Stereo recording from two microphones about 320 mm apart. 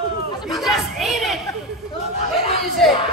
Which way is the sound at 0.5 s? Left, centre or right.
Centre.